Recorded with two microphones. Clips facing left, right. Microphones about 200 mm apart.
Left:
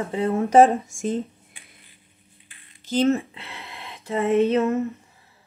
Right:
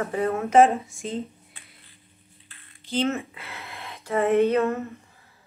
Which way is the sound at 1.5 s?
15° left (ahead or behind).